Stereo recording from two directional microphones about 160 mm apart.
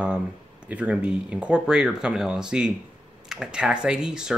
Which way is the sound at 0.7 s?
10° right (ahead or behind).